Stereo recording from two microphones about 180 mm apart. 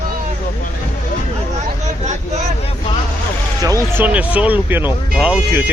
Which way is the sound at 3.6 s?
15° right (ahead or behind).